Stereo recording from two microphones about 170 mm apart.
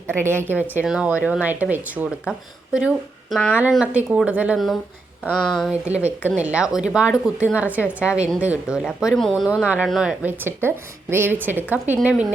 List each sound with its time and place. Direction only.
0.1 s speech: 15° right (ahead or behind); by 5.7 s centre (ahead or behind)
5.9 s speech: 10° right (ahead or behind)